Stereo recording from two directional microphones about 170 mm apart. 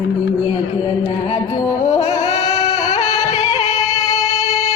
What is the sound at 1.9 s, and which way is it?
Singing, 40° left (ahead or behind).